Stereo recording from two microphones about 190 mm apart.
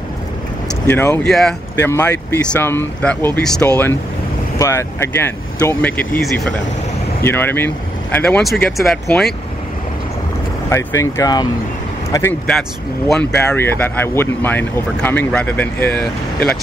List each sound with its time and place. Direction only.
0.8 s speech: 10° left (ahead or behind)
10.7 s speech: 15° left (ahead or behind)